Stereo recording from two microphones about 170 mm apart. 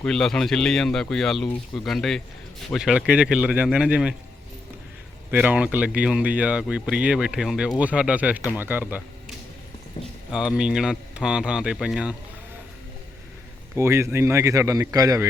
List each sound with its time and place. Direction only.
0.0 s speech: 5° left (ahead or behind)
5.3 s speech: 10° right (ahead or behind)
10.3 s speech: 5° right (ahead or behind)
13.7 s a man's voice: 15° right (ahead or behind)